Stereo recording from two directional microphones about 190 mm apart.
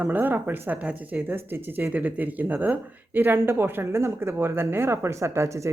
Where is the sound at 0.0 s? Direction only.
10° right (ahead or behind).